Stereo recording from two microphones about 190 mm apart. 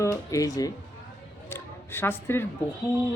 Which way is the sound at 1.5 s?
10° left (ahead or behind).